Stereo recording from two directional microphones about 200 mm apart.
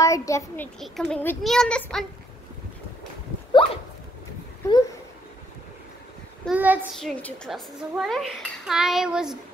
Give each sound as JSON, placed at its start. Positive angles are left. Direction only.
{"t": 0.0, "sound": "a child's voice", "side_deg": 15}
{"t": 0.7, "sound": "a child's voice", "side_deg": 5}
{"t": 3.6, "sound": "a sound", "side_deg": 25}
{"t": 6.4, "sound": "child singing", "side_deg": -5}
{"t": 7.0, "sound": "a child's voice", "side_deg": 5}